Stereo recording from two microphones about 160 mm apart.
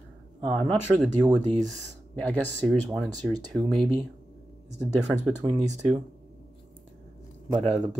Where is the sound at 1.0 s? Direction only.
5° right (ahead or behind).